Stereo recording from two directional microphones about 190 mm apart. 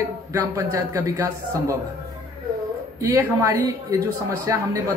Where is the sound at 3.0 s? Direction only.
15° right (ahead or behind).